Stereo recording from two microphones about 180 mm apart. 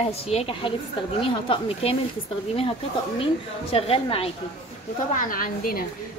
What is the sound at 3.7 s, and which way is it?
Speech, 30° left (ahead or behind).